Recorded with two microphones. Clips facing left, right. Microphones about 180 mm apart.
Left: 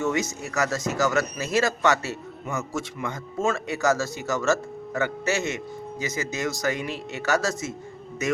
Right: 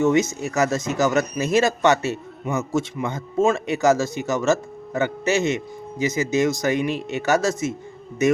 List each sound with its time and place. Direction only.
0.0 s speech: 20° right (ahead or behind)